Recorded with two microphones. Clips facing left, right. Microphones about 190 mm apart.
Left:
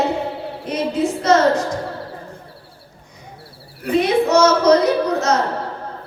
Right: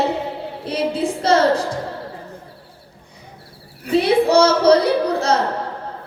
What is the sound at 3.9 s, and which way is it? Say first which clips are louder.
Female singing: right 1 dB; 30° right (ahead or behind).